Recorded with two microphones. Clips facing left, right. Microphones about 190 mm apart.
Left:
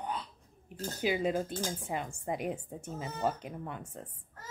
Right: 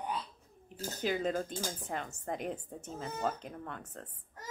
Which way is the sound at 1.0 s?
10° left (ahead or behind).